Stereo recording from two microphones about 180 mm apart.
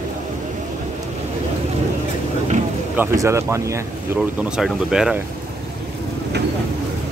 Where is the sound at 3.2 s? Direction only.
15° right (ahead or behind).